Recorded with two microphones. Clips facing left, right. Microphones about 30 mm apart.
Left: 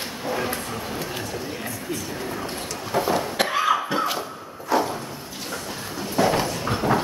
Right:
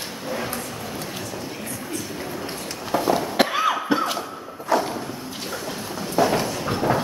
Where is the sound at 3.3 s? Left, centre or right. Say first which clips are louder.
Right 1 dB; centre.